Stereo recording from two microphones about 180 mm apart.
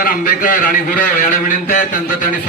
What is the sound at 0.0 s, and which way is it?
A man's voice, 50° left (ahead or behind).